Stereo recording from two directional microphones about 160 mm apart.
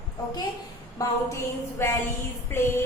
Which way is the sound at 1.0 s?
20° left (ahead or behind).